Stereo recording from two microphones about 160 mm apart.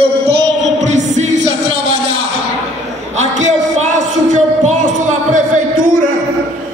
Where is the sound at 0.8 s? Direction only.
45° right (ahead or behind).